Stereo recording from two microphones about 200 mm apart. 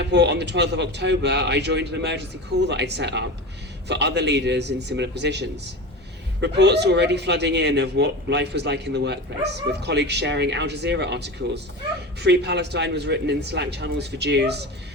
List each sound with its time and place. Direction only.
0.0 s speech: 60° right (ahead or behind)